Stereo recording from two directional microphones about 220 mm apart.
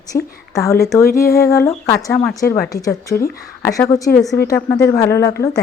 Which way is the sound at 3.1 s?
45° left (ahead or behind).